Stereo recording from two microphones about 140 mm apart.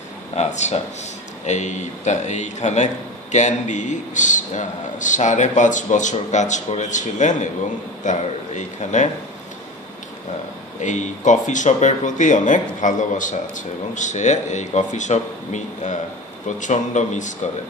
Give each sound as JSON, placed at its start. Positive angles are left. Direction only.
{"t": 0.4, "sound": "a man's voice", "side_deg": 55}
{"t": 10.8, "sound": "a man's voice", "side_deg": 60}